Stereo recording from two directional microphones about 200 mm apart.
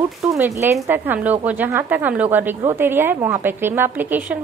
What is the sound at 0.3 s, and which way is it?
A woman's voice, 10° right (ahead or behind).